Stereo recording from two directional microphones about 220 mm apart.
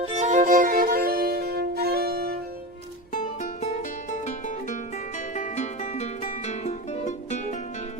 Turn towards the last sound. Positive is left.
turn(degrees=35)  # may be behind; listen again after turning